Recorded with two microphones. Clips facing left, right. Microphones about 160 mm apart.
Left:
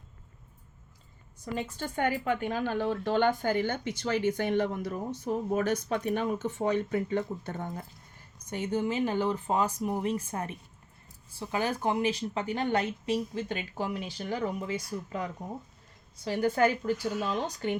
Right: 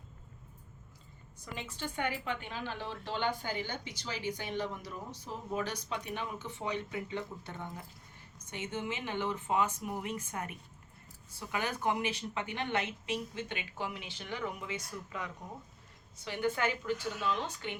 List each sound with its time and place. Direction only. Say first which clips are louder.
1.5 s speech: left 6 dB; 45° left (ahead or behind)